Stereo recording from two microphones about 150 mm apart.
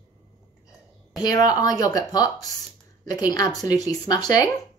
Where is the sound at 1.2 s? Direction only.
25° left (ahead or behind).